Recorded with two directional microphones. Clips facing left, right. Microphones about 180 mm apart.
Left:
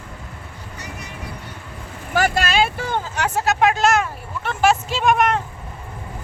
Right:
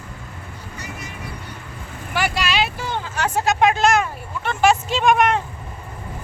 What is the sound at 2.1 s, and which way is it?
Vehicle, 45° left (ahead or behind).